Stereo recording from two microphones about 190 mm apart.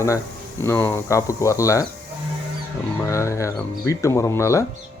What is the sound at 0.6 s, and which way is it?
Speech, 10° left (ahead or behind).